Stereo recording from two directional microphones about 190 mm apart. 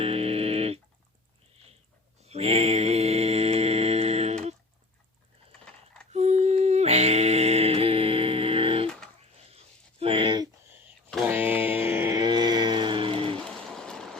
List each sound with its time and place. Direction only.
0.0 s a sound: 30° right (ahead or behind)
2.2 s mantra: 35° right (ahead or behind)
5.6 s typing: 5° left (ahead or behind)
6.1 s mantra: 35° right (ahead or behind)
10.0 s a sound: 30° right (ahead or behind)
11.3 s mantra: 10° right (ahead or behind); by 13.3 s 30° right (ahead or behind)
13.3 s stream: 5° left (ahead or behind)